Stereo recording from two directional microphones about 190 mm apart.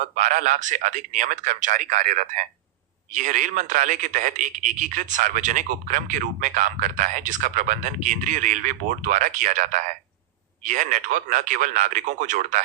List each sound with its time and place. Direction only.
0.0 s speech: 40° right (ahead or behind)